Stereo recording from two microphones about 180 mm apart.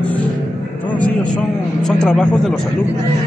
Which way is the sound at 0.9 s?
5° left (ahead or behind).